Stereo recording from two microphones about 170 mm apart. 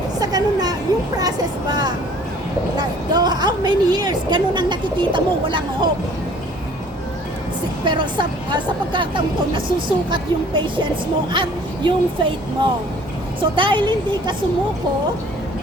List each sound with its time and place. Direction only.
0.2 s vehicle: 25° right (ahead or behind)
2.7 s a woman's voice: 25° right (ahead or behind)
7.9 s a woman's voice: 25° right (ahead or behind)
13.4 s a woman's voice: 30° right (ahead or behind)